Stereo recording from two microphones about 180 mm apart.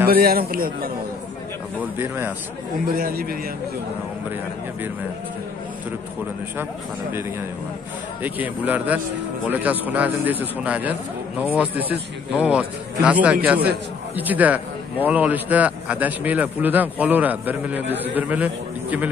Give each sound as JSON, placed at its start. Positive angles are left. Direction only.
{"t": 0.0, "sound": "a man's voice", "side_deg": -55}
{"t": 1.8, "sound": "a man's voice", "side_deg": -10}
{"t": 2.9, "sound": "a man's voice", "side_deg": -55}
{"t": 6.6, "sound": "a man's voice", "side_deg": -15}